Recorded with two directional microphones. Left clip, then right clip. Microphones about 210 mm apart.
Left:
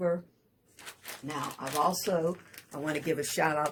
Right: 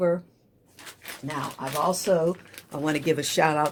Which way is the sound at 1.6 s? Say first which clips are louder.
Right 4 dB; 40° right (ahead or behind).